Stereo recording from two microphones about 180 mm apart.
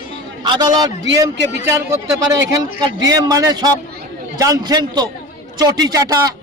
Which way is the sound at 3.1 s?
20° right (ahead or behind).